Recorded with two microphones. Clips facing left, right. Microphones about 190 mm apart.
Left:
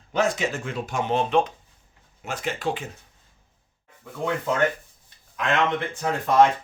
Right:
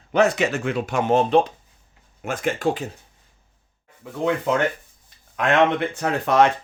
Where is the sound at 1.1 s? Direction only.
35° right (ahead or behind).